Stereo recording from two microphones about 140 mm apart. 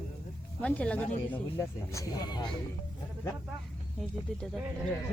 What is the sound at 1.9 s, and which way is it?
Speech, 25° left (ahead or behind).